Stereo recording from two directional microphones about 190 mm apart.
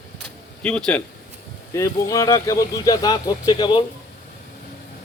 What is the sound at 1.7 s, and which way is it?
Speech, 15° left (ahead or behind).